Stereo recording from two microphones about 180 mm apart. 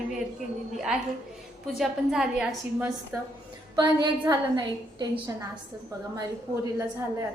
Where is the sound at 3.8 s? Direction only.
25° right (ahead or behind).